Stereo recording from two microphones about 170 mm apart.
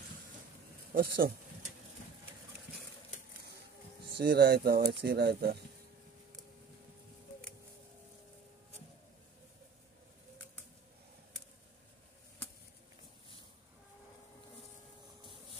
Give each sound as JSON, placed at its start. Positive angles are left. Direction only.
{"t": 0.9, "sound": "speech", "side_deg": -60}
{"t": 4.2, "sound": "speech", "side_deg": -70}